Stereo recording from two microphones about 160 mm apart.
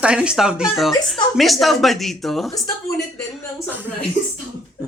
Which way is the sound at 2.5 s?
20° left (ahead or behind).